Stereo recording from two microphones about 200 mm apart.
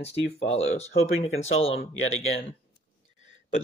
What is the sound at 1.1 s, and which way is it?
Speech, 90° left.